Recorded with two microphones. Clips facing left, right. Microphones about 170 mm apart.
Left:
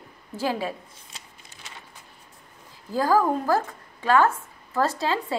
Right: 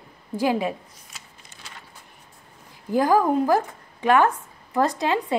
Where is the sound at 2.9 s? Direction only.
15° right (ahead or behind).